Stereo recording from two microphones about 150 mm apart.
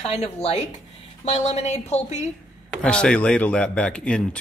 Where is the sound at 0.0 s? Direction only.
40° left (ahead or behind).